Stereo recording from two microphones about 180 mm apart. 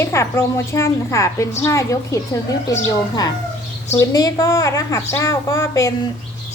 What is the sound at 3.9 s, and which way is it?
A woman's voice, 20° left (ahead or behind).